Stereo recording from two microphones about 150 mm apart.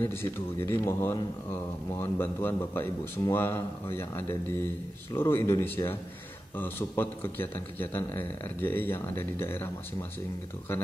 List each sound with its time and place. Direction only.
0.0 s a man's voice: 15° left (ahead or behind)